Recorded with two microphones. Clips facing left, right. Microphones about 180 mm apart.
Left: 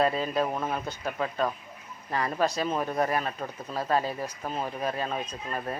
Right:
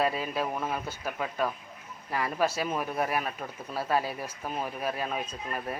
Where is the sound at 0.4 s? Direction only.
15° left (ahead or behind).